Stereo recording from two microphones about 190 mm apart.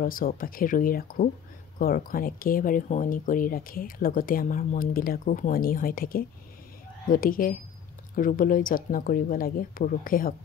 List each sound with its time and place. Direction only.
0.0 s speech: 50° left (ahead or behind)